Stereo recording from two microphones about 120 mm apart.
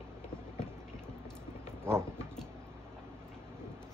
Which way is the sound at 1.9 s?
20° right (ahead or behind).